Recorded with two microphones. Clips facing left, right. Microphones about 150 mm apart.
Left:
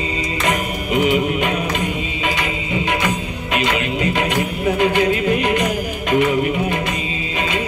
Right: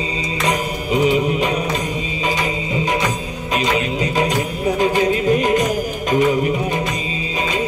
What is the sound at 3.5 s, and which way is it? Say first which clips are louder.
Music: right 1 dB; 35° right (ahead or behind).